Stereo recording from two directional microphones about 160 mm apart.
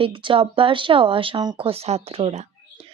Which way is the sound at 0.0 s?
30° right (ahead or behind).